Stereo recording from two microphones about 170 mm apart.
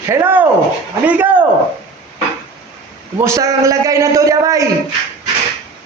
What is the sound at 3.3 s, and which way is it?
A man's voice, 20° right (ahead or behind).